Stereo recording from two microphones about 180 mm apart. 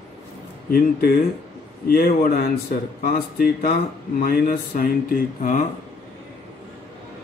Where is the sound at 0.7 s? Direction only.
55° left (ahead or behind).